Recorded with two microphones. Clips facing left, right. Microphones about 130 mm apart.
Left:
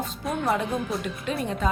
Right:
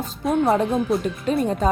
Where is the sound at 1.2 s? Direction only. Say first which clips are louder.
Right 7 dB; 40° right (ahead or behind).